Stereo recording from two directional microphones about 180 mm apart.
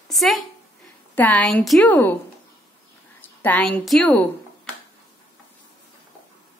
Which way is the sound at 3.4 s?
10° left (ahead or behind).